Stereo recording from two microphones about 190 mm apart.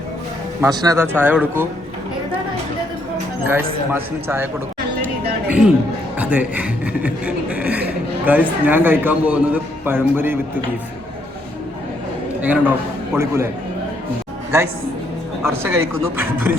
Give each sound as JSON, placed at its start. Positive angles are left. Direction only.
{"t": 0.6, "sound": "a man's voice", "side_deg": -20}
{"t": 3.4, "sound": "a man's voice", "side_deg": -10}
{"t": 5.5, "sound": "a man's voice", "side_deg": -5}
{"t": 12.4, "sound": "a man's voice", "side_deg": -10}
{"t": 14.5, "sound": "a man's voice", "side_deg": -15}